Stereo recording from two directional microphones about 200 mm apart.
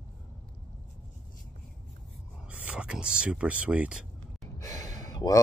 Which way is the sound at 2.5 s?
5° right (ahead or behind).